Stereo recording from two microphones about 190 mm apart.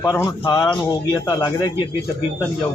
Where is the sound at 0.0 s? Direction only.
15° left (ahead or behind).